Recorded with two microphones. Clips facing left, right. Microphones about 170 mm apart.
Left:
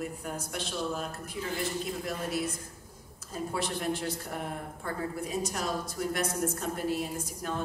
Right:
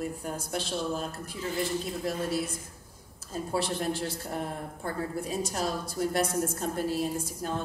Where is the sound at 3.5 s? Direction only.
30° right (ahead or behind).